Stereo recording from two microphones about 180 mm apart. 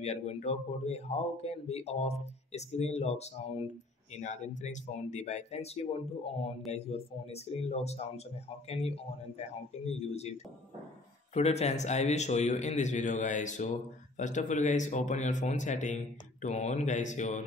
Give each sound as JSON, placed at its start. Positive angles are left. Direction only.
{"t": 0.0, "sound": "a man's voice", "side_deg": 35}